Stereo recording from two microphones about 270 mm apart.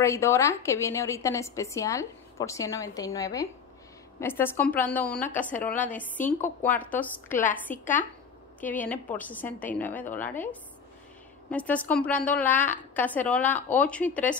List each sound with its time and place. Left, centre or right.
0.0 s a woman's voice: centre
7.2 s a woman's voice: left
8.5 s a woman's voice: centre